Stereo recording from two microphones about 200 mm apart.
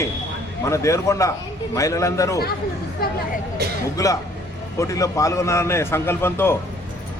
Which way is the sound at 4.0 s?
15° left (ahead or behind).